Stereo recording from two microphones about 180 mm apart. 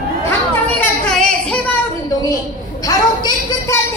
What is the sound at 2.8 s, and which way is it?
Speech, 20° left (ahead or behind).